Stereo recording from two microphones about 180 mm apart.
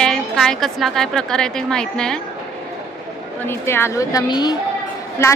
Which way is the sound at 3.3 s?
10° left (ahead or behind).